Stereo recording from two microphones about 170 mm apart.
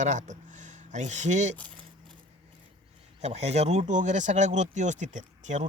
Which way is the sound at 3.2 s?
40° right (ahead or behind).